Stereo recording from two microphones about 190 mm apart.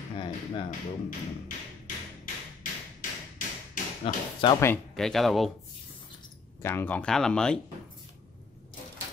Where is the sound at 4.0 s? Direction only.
25° left (ahead or behind).